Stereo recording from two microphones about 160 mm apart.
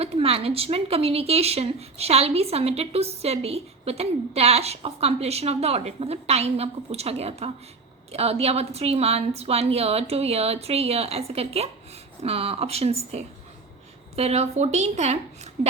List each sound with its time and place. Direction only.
0.0 s a woman's voice: 35° right (ahead or behind)
14.2 s a woman's voice: 40° right (ahead or behind)